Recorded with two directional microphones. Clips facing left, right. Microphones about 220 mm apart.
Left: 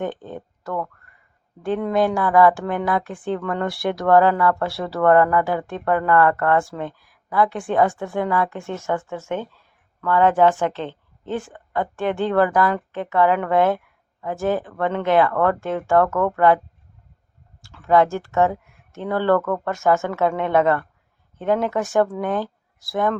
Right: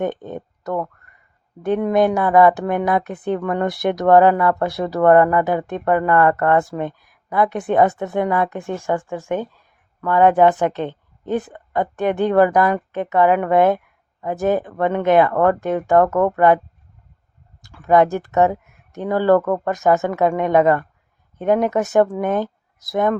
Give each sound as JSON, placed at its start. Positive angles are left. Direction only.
{"t": 0.0, "sound": "a woman's voice", "side_deg": -20}
{"t": 17.6, "sound": "a woman's voice", "side_deg": -15}